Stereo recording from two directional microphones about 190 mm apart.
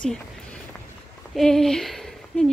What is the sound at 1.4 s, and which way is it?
Speech, centre (ahead or behind).